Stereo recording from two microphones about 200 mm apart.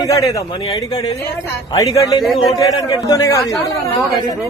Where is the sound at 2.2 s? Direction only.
Centre (ahead or behind).